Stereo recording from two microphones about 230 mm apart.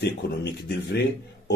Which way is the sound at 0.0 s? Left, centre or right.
Left.